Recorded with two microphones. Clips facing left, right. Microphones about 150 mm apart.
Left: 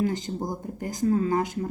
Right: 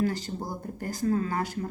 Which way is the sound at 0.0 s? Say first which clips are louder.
Left 2 dB; 20° left (ahead or behind).